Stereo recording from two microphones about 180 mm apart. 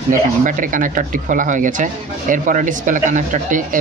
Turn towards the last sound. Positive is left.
turn(degrees=-45)  # may be behind; listen again after turning